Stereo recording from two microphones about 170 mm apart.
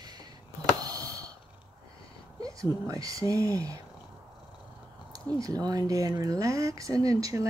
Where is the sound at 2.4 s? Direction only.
20° right (ahead or behind).